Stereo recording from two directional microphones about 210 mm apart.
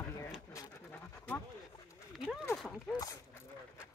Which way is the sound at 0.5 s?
15° left (ahead or behind).